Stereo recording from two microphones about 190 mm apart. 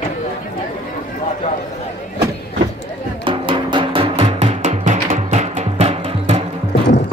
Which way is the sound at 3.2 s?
25° right (ahead or behind).